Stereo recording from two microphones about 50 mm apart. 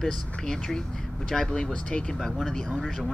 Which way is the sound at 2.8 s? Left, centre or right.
Centre.